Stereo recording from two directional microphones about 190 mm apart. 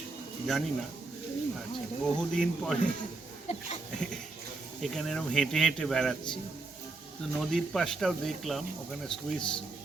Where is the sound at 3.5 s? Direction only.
35° left (ahead or behind).